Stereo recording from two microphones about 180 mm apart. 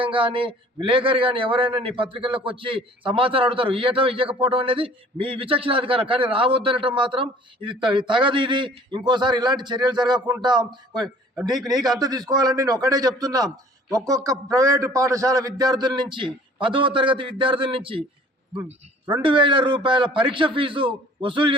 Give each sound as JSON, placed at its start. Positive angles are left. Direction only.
{"t": 0.0, "sound": "a man's voice", "side_deg": -30}
{"t": 19.2, "sound": "a man's voice", "side_deg": -25}